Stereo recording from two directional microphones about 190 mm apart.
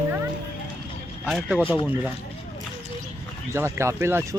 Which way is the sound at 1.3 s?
5° right (ahead or behind).